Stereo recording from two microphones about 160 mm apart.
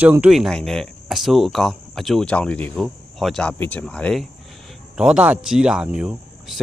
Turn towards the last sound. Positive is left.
turn(degrees=-5)  # may be behind; listen again after turning